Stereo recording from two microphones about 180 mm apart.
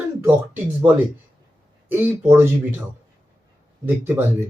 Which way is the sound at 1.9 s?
10° right (ahead or behind).